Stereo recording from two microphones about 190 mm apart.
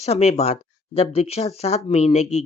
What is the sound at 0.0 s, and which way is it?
Speech, 35° left (ahead or behind).